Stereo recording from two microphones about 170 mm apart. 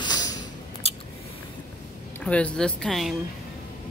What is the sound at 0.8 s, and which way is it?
Scissors, 35° left (ahead or behind).